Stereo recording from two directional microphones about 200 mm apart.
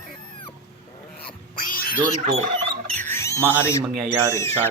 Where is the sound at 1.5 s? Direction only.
45° left (ahead or behind).